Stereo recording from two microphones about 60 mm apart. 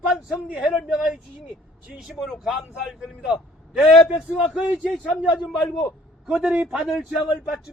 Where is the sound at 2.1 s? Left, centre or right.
Centre.